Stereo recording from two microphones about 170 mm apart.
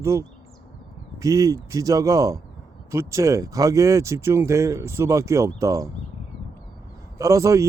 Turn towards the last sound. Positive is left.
turn(degrees=-20)  # may be behind; listen again after turning